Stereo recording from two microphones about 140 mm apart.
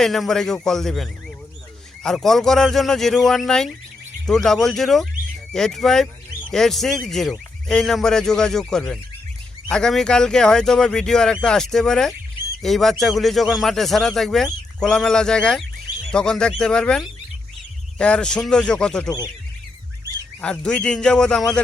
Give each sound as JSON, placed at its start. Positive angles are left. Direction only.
{"t": 0.0, "sound": "speech", "side_deg": 0}
{"t": 19.0, "sound": "speech", "side_deg": 25}
{"t": 20.4, "sound": "a man's voice", "side_deg": 5}